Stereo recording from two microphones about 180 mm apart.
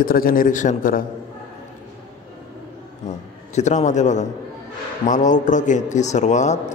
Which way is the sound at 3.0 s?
40° left (ahead or behind).